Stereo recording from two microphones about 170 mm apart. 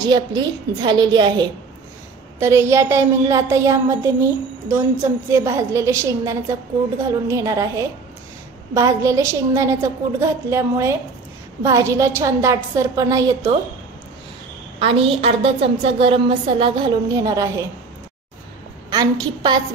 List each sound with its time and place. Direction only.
0.0 s a woman's voice: 25° right (ahead or behind)
2.3 s a woman's voice: 15° right (ahead or behind)
14.8 s a woman's voice: 35° right (ahead or behind); by 17.6 s 20° right (ahead or behind)
18.9 s a woman's voice: 25° right (ahead or behind)